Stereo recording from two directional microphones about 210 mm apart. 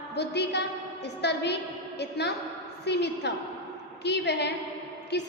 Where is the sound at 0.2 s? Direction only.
55° left (ahead or behind).